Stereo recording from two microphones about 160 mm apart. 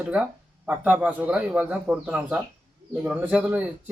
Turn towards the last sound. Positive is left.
turn(degrees=-10)  # may be behind; listen again after turning